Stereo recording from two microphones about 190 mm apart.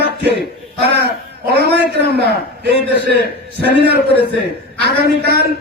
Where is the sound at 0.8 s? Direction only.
60° right (ahead or behind).